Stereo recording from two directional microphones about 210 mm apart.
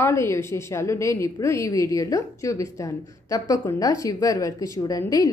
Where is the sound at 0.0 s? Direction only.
15° left (ahead or behind).